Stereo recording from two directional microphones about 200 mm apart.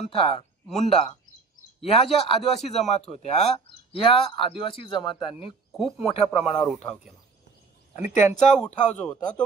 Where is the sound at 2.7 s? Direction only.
35° left (ahead or behind).